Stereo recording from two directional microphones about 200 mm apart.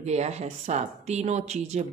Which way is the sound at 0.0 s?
35° right (ahead or behind).